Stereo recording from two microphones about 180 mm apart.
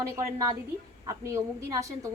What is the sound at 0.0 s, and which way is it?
A woman's voice, 15° right (ahead or behind).